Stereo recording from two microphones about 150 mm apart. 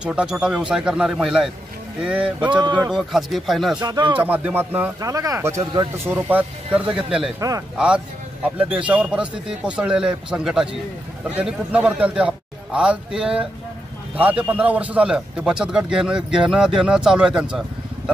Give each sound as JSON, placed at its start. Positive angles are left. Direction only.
{"t": 0.0, "sound": "a man's voice", "side_deg": -5}
{"t": 2.4, "sound": "speech", "side_deg": -30}
{"t": 2.9, "sound": "a man's voice", "side_deg": 0}
{"t": 3.8, "sound": "speech", "side_deg": -30}
{"t": 4.2, "sound": "speech", "side_deg": -10}
{"t": 5.0, "sound": "speech", "side_deg": -20}
{"t": 7.3, "sound": "speech", "side_deg": -25}
{"t": 7.7, "sound": "a man's voice", "side_deg": -5}